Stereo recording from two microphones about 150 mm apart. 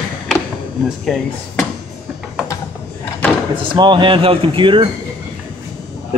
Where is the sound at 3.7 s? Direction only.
30° right (ahead or behind).